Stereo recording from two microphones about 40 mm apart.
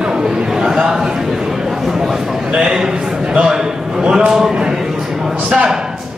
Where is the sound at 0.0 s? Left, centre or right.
Centre.